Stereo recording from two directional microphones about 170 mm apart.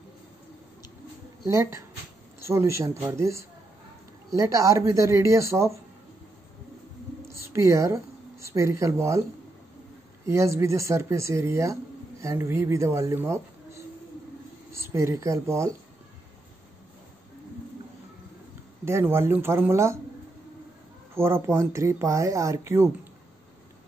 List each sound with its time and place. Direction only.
1.5 s speech: 20° right (ahead or behind)
7.2 s speech: 15° right (ahead or behind)
10.2 s speech: 15° right (ahead or behind)
18.9 s speech: 15° right (ahead or behind)
21.1 s speech: 15° right (ahead or behind)